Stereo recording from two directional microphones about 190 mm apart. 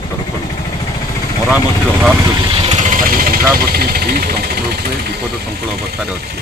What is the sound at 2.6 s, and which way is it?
Speech, 45° right (ahead or behind).